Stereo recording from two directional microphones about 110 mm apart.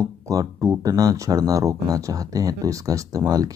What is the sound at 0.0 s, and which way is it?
Speech, 30° right (ahead or behind).